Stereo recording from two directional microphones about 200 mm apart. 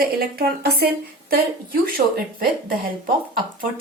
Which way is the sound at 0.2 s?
50° right (ahead or behind).